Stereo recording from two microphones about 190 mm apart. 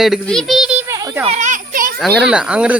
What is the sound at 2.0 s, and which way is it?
Speech, centre (ahead or behind).